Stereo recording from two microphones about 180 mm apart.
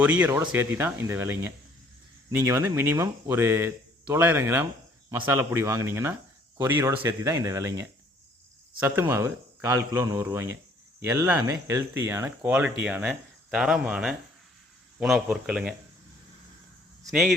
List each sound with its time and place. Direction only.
0.0 s speech: 10° right (ahead or behind)
9.0 s speech: 15° right (ahead or behind)
17.0 s speech: centre (ahead or behind)